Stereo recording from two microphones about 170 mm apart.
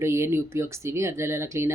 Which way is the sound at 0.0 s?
15° right (ahead or behind).